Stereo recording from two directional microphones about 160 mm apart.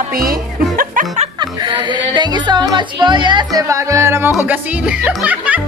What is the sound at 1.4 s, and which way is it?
Speech, 30° right (ahead or behind).